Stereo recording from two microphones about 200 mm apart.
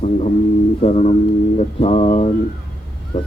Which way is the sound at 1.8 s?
30° left (ahead or behind).